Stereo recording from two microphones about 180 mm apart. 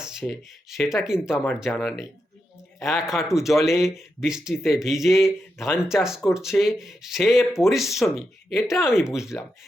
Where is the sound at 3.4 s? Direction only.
15° left (ahead or behind).